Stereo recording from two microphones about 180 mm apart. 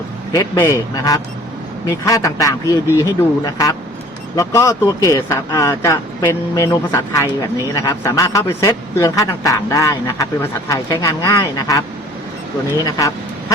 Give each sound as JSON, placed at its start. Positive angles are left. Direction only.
{"t": 0.3, "sound": "a man's voice", "side_deg": 20}